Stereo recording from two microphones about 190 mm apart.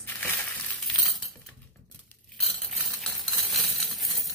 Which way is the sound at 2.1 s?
Centre (ahead or behind).